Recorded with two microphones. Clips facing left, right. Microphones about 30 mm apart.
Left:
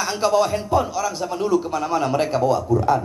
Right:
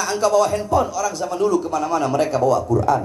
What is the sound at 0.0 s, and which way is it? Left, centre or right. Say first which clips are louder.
A man's voice: right 2 dB; left.